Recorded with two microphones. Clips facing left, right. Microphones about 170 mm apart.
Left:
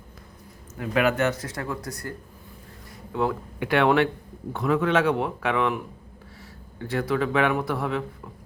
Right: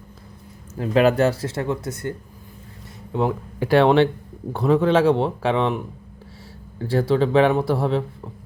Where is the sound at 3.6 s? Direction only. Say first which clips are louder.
Right 5 dB; 30° right (ahead or behind).